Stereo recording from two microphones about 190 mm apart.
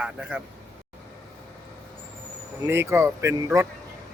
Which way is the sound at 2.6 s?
10° right (ahead or behind).